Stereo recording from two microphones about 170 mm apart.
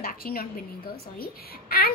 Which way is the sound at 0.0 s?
60° left (ahead or behind).